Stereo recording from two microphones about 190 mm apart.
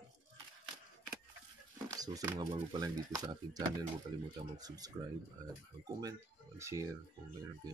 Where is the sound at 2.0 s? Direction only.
20° right (ahead or behind).